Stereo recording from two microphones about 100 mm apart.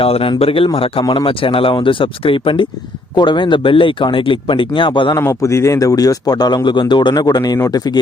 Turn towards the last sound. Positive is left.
turn(degrees=40)  # may be behind; listen again after turning